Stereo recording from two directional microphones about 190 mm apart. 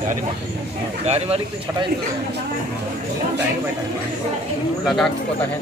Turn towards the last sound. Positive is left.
turn(degrees=0)  # may be behind; listen again after turning